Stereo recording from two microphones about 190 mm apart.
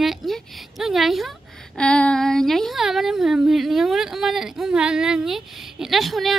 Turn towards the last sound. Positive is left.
turn(degrees=0)  # may be behind; listen again after turning